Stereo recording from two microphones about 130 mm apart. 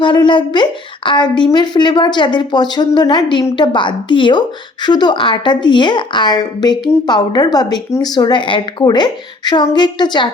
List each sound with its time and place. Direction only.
0.0 s a woman's voice: 40° left (ahead or behind)